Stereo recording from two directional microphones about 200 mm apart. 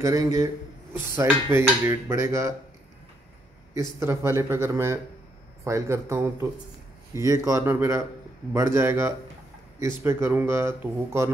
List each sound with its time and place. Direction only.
0.0 s speech: 15° right (ahead or behind)
4.0 s speech: 15° right (ahead or behind)